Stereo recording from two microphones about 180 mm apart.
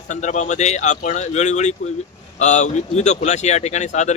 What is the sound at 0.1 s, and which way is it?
Speech, 40° left (ahead or behind).